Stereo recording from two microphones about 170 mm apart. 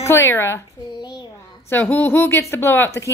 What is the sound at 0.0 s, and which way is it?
Speech, 15° left (ahead or behind).